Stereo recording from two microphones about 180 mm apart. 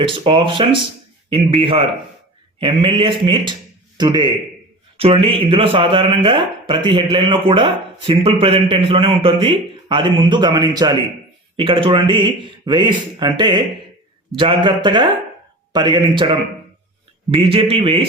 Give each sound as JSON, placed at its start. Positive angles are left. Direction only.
{"t": 0.0, "sound": "a man's voice", "side_deg": -30}